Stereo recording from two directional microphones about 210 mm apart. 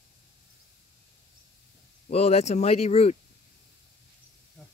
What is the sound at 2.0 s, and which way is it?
Speech, 30° left (ahead or behind).